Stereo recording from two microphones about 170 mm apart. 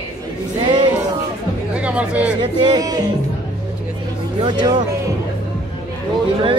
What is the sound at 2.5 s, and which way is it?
Music, 25° right (ahead or behind).